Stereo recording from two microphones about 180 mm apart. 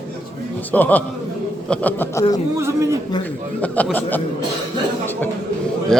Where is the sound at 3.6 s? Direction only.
10° left (ahead or behind).